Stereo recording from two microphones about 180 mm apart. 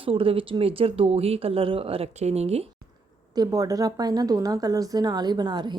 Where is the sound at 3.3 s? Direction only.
20° right (ahead or behind).